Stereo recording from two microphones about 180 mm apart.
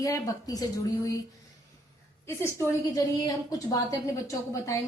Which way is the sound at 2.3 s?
15° left (ahead or behind).